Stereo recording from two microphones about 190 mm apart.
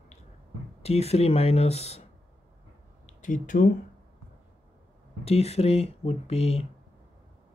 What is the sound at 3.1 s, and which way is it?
Speech, 40° left (ahead or behind).